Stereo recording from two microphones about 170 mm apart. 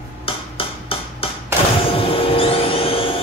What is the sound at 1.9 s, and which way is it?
Vehicle, 30° left (ahead or behind).